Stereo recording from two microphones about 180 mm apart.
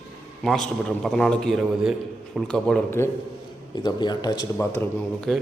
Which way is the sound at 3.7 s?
25° left (ahead or behind).